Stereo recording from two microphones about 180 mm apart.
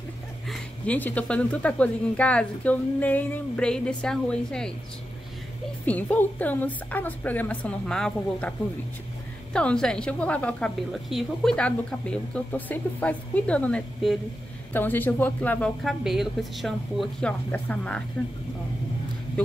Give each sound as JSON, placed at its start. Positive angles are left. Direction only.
{"t": 0.5, "sound": "a woman's voice", "side_deg": 10}
{"t": 5.9, "sound": "a woman's voice", "side_deg": 10}